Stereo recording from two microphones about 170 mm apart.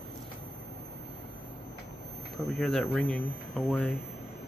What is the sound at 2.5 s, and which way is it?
Speech, centre (ahead or behind).